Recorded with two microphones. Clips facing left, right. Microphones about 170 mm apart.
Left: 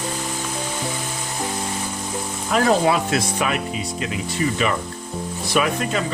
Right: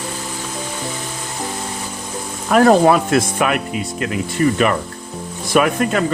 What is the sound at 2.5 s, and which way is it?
Speech, 55° right (ahead or behind).